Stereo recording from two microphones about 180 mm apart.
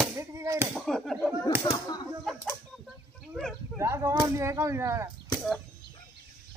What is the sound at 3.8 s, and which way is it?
Speech, 15° right (ahead or behind).